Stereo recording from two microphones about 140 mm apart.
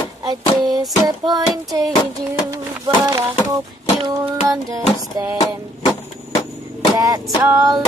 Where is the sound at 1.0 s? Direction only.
30° right (ahead or behind).